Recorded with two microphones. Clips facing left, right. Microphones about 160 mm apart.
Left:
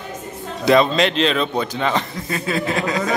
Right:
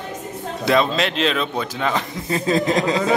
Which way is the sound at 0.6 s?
Centre (ahead or behind).